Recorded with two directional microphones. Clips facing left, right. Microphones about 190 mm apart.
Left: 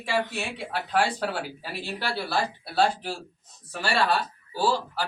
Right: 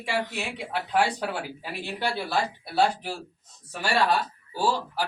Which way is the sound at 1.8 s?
15° right (ahead or behind).